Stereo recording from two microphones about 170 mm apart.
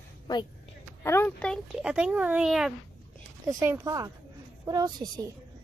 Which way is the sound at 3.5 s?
20° right (ahead or behind).